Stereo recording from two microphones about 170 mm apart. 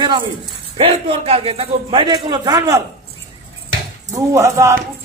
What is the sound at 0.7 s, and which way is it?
A man's voice, 35° right (ahead or behind).